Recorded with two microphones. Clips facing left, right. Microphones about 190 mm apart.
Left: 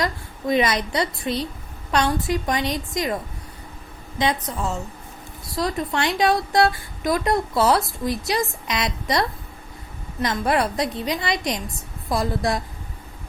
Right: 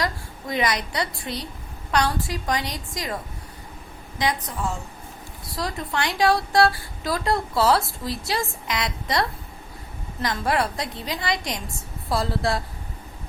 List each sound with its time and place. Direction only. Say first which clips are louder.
0.0 s a woman's voice: left 3 dB; 25° left (ahead or behind)
5.5 s a woman's voice: left 4 dB; 20° left (ahead or behind)